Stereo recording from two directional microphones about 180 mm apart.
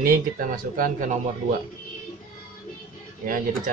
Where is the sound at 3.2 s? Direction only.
50° right (ahead or behind).